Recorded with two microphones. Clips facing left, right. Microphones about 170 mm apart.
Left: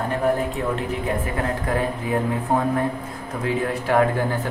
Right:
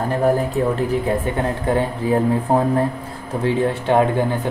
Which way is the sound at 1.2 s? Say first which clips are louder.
Right 4 dB; 25° right (ahead or behind).